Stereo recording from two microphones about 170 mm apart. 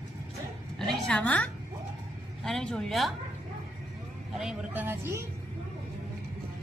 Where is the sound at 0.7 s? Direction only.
5° left (ahead or behind).